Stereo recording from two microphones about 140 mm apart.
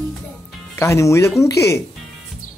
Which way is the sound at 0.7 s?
20° left (ahead or behind).